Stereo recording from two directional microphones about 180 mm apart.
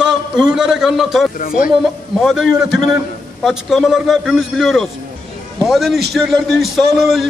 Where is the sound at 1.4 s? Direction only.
50° left (ahead or behind).